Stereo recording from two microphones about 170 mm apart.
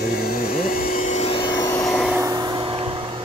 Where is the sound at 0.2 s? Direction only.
55° left (ahead or behind); by 1.4 s 40° left (ahead or behind).